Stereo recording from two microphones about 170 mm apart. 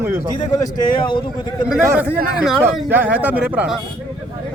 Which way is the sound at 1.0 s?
30° left (ahead or behind).